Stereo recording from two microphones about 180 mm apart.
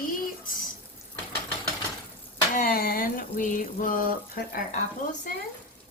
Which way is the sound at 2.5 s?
55° left (ahead or behind).